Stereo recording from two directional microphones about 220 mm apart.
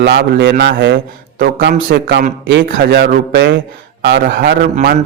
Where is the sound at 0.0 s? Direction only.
50° right (ahead or behind).